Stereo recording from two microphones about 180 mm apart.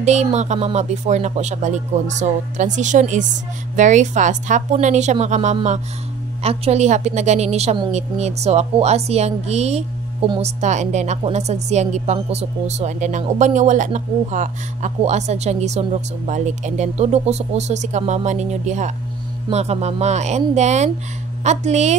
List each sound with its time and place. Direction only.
0.0 s a woman's voice: 40° right (ahead or behind)